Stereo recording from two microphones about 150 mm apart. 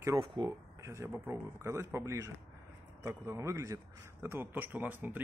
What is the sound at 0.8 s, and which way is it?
A man's voice, 20° right (ahead or behind).